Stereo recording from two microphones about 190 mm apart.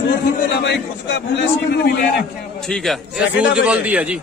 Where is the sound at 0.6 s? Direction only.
65° left (ahead or behind).